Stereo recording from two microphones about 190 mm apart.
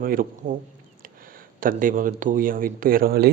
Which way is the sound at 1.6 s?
45° right (ahead or behind).